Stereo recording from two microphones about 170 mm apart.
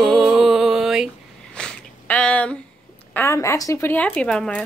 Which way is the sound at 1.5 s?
5° left (ahead or behind).